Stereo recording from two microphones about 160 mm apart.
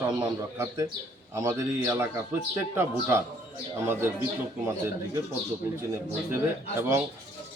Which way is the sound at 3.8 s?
15° right (ahead or behind).